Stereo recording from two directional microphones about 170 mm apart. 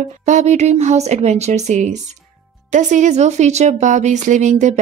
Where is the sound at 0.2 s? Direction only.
45° right (ahead or behind).